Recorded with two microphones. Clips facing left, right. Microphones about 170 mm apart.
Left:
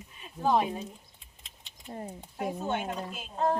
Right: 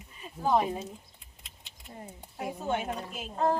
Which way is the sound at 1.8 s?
40° left (ahead or behind).